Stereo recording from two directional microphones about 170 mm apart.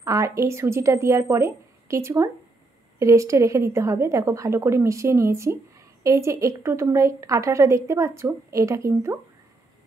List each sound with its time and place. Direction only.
0.0 s a woman's voice: 20° right (ahead or behind)